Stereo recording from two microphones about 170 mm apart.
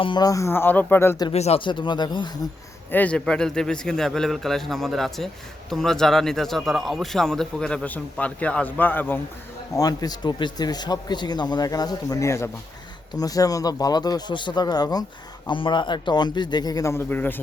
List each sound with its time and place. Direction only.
0.0 s speech: 25° left (ahead or behind)
1.3 s a man's voice: 40° left (ahead or behind)
2.9 s speech: 10° left (ahead or behind)
9.7 s a man's voice: 20° left (ahead or behind)